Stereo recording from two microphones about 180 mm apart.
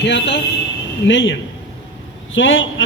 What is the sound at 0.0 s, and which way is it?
Speech, 80° left.